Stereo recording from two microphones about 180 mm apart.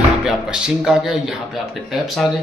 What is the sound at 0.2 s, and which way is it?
A man's voice, 5° right (ahead or behind).